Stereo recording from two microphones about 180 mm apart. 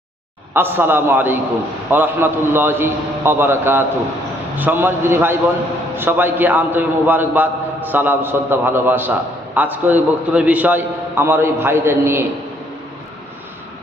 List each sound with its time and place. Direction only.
0.5 s a man's voice: 10° right (ahead or behind)